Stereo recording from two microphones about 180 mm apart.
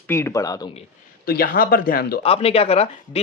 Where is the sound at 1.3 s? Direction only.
60° left (ahead or behind).